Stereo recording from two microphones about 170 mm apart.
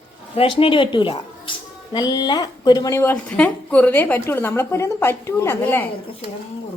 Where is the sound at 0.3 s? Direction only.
35° left (ahead or behind); by 5.9 s 15° left (ahead or behind).